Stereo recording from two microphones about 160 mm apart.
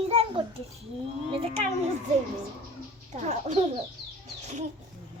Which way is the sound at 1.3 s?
35° right (ahead or behind).